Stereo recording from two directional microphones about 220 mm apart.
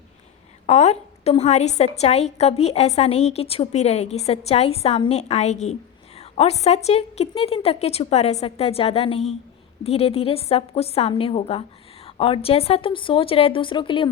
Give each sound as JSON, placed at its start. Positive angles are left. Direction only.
{"t": 0.7, "sound": "a woman's voice", "side_deg": 30}